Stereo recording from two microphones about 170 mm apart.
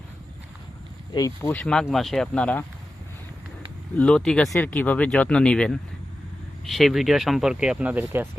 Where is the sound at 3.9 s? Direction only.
5° left (ahead or behind); by 8.3 s 10° right (ahead or behind).